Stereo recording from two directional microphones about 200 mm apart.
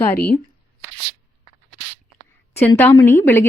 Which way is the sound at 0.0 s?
10° left (ahead or behind).